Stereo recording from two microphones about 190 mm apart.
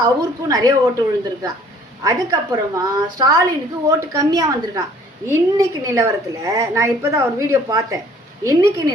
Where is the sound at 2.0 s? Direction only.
20° right (ahead or behind).